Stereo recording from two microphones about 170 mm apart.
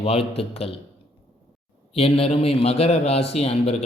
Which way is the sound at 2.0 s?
35° left (ahead or behind).